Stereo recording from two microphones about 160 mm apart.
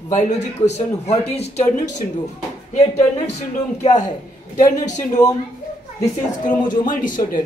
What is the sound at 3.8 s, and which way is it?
A man's voice, 50° left (ahead or behind).